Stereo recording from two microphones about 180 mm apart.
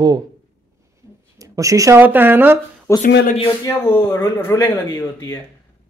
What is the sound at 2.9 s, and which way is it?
A man's voice, 15° left (ahead or behind).